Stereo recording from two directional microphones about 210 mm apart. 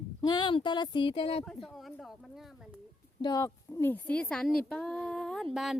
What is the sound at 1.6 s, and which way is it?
A woman's voice, centre (ahead or behind).